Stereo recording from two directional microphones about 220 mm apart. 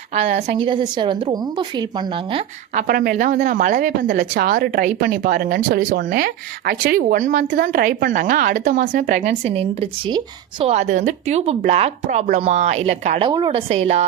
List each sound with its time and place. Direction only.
0.1 s speech: 30° right (ahead or behind)
2.7 s speech: 40° right (ahead or behind)